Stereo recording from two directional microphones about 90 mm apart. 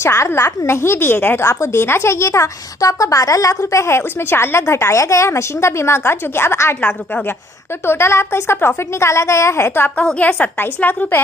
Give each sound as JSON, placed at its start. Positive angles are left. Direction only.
{"t": 0.0, "sound": "a woman's voice", "side_deg": 30}
{"t": 10.0, "sound": "a woman's voice", "side_deg": 15}